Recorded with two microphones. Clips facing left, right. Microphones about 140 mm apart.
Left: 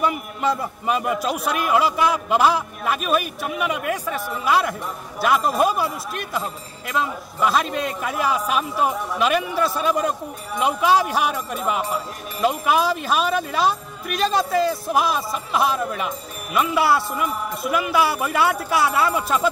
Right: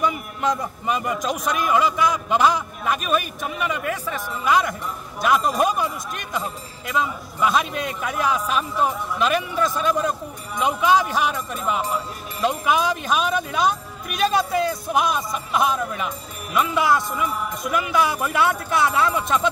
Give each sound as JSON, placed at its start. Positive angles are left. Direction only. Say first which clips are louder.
{"t": 0.4, "sound": "a man's voice", "louder": "even", "side_deg": 5}